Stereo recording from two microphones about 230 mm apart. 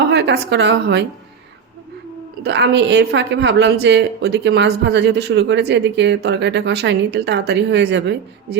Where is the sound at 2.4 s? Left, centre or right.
Right.